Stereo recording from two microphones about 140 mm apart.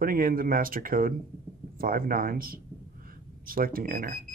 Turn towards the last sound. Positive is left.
turn(degrees=-85)